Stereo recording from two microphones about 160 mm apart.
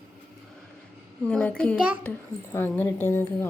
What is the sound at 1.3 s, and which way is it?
Speech, 10° left (ahead or behind).